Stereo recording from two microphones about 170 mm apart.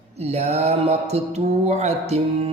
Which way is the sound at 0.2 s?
40° right (ahead or behind).